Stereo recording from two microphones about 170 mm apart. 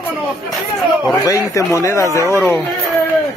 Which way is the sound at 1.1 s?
20° left (ahead or behind).